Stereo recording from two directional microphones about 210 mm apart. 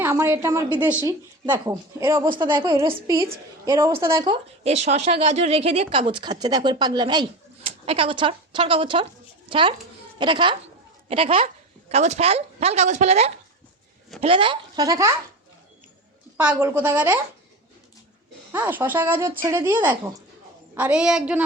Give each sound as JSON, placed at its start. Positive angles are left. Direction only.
{"t": 0.0, "sound": "a woman's voice", "side_deg": -10}
{"t": 16.4, "sound": "a woman's voice", "side_deg": -5}
{"t": 18.5, "sound": "a woman's voice", "side_deg": -10}